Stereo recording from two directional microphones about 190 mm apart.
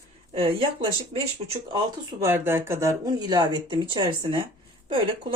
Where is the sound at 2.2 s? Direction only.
10° right (ahead or behind).